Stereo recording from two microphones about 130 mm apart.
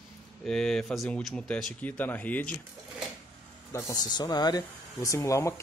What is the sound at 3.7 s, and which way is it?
Speech, 25° left (ahead or behind).